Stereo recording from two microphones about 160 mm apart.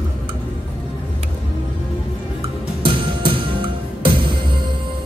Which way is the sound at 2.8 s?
30° right (ahead or behind).